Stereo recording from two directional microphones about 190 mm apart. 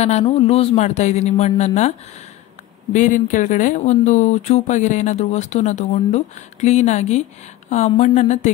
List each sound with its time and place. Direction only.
0.0 s speech: 35° left (ahead or behind)